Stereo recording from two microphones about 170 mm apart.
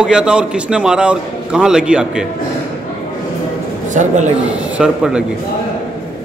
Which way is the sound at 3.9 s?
45° right (ahead or behind).